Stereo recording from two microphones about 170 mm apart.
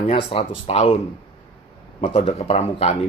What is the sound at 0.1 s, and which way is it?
Speech, 35° left (ahead or behind).